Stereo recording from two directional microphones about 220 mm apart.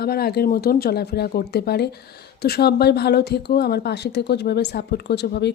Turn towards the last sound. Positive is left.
turn(degrees=50)  # may be behind; listen again after turning